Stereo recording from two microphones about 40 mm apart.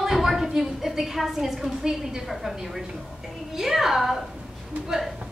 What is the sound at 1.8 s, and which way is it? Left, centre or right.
A woman's voice, centre.